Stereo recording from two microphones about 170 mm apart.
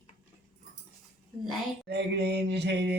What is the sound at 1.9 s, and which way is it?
Mantra, 80° right.